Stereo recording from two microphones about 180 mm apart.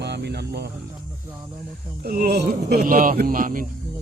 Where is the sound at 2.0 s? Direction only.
55° right (ahead or behind).